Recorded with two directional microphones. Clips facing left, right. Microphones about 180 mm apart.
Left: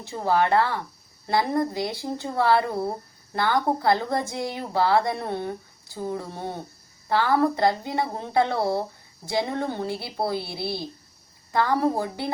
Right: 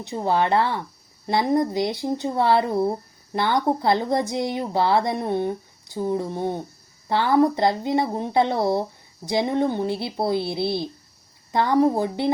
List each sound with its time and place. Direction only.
0.0 s speech: 20° right (ahead or behind)